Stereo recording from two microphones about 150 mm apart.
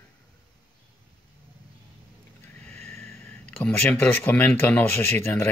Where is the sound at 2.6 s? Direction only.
5° left (ahead or behind).